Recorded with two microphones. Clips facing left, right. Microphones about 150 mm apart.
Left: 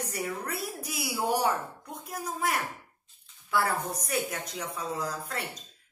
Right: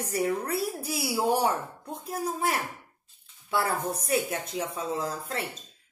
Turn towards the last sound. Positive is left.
turn(degrees=-25)  # may be behind; listen again after turning